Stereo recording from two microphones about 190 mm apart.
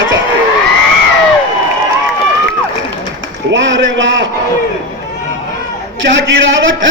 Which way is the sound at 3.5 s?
75° right (ahead or behind).